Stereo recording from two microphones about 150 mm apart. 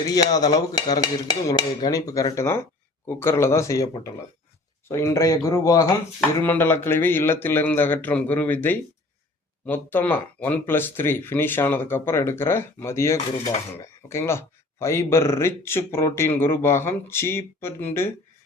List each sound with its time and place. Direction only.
0.1 s speech: 25° left (ahead or behind)
4.9 s speech: 20° left (ahead or behind)
13.4 s speech: 45° left (ahead or behind)
13.8 s speech: 20° left (ahead or behind)